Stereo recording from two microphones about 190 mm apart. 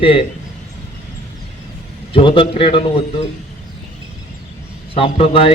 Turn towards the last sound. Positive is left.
turn(degrees=30)  # may be behind; listen again after turning